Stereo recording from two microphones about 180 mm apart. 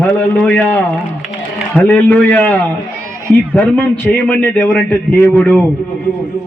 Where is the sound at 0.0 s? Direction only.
5° left (ahead or behind).